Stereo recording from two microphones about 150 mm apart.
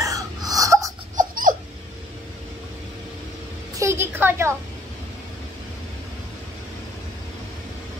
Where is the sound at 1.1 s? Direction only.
65° right (ahead or behind).